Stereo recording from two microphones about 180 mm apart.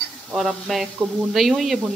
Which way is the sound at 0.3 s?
Centre (ahead or behind).